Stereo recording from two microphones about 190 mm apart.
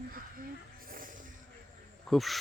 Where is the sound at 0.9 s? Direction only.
45° right (ahead or behind).